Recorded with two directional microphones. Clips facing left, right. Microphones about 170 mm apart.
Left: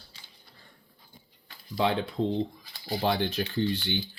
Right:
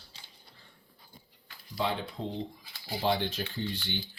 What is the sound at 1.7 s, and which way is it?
Speech, 90° left.